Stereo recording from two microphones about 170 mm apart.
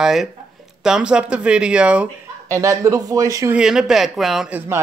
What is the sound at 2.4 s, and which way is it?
Speech, 20° right (ahead or behind).